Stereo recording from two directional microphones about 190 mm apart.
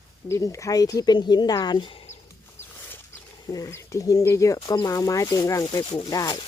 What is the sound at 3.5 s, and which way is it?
Speech, 15° left (ahead or behind).